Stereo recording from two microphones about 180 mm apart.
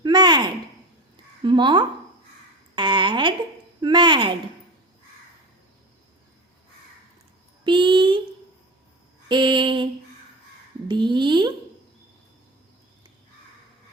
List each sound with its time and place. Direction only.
0.0 s a sound: 25° right (ahead or behind)
1.5 s speech: 25° right (ahead or behind)
2.7 s a sound: 25° right (ahead or behind)
3.8 s speech: 25° right (ahead or behind)
7.6 s speech: 25° right (ahead or behind)
9.3 s speech: 25° right (ahead or behind)